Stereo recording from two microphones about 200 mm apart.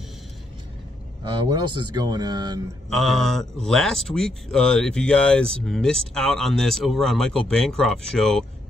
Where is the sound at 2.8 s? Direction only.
Centre (ahead or behind).